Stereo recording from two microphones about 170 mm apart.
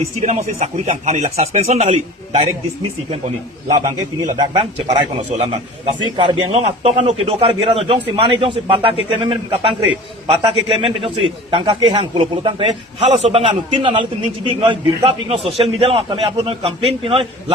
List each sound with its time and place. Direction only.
0.2 s a man's voice: 40° right (ahead or behind)
3.7 s a man's voice: 45° right (ahead or behind)
4.4 s a man's voice: 30° right (ahead or behind)